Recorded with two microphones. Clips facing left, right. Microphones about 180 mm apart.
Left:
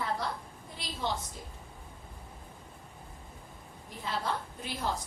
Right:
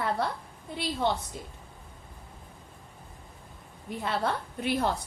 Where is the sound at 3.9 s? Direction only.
65° right (ahead or behind).